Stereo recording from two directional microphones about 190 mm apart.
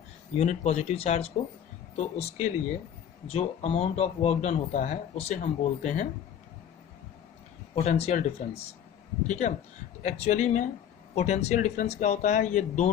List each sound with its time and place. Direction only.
0.3 s speech: 35° left (ahead or behind)
7.8 s speech: 35° left (ahead or behind)